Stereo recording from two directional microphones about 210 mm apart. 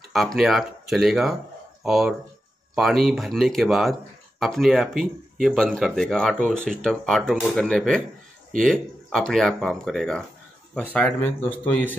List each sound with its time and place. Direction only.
0.1 s speech: centre (ahead or behind)